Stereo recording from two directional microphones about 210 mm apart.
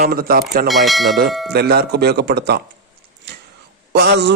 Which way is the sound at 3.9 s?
55° right (ahead or behind).